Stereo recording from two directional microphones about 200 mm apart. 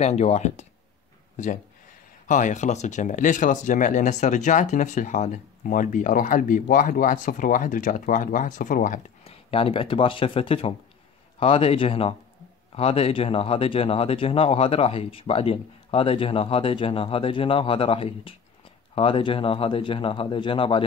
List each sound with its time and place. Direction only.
0.0 s speech: 35° left (ahead or behind)